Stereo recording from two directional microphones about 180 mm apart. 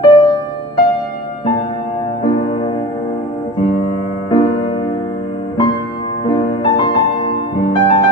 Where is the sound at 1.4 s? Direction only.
30° left (ahead or behind).